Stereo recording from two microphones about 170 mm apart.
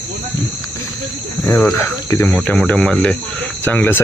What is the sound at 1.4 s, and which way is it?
Speech, 10° left (ahead or behind).